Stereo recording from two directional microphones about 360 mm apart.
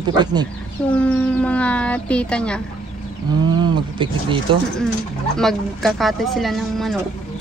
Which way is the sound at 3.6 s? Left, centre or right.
Centre.